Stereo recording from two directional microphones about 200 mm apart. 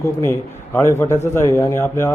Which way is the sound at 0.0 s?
15° left (ahead or behind).